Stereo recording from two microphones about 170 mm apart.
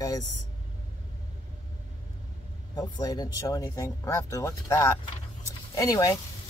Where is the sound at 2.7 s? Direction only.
25° left (ahead or behind).